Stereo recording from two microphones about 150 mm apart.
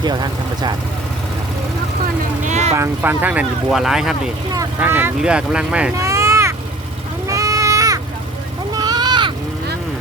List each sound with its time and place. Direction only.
0.0 s speech: 30° right (ahead or behind)
2.4 s vehicle: 50° right (ahead or behind)
2.7 s speech: 15° right (ahead or behind)
4.8 s speech: 15° right (ahead or behind)
6.0 s vehicle: 20° right (ahead or behind)
7.3 s a sound: 20° right (ahead or behind)